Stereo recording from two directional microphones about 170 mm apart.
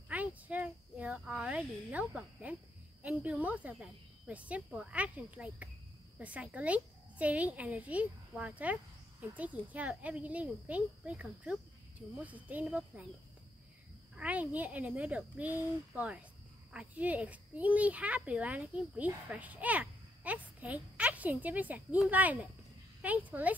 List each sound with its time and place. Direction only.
0.1 s a sound: 10° right (ahead or behind)
3.0 s a child's voice: 10° right (ahead or behind)
14.1 s a child's voice: 10° right (ahead or behind)